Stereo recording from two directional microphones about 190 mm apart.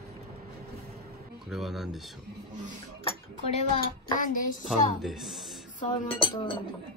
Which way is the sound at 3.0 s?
30° left (ahead or behind).